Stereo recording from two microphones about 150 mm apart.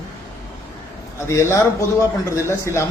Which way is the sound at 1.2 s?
20° left (ahead or behind).